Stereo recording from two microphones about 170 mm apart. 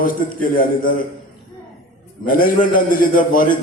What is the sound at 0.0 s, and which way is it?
Speech, 55° left (ahead or behind).